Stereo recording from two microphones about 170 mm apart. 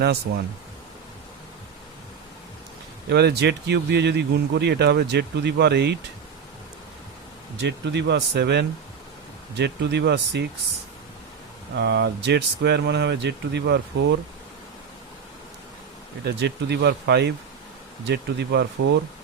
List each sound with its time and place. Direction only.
3.1 s speech: 75° right (ahead or behind)
7.6 s speech: 90° right
11.8 s speech: 90° right
16.2 s speech: 85° right